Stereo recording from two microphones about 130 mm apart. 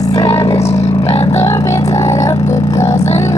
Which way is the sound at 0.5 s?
55° left (ahead or behind).